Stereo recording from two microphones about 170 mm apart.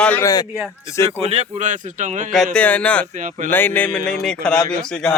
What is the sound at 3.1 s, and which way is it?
Speech, 50° right (ahead or behind).